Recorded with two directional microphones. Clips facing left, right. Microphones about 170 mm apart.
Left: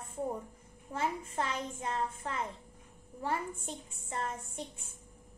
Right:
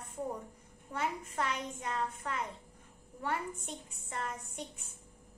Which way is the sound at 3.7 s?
35° left (ahead or behind).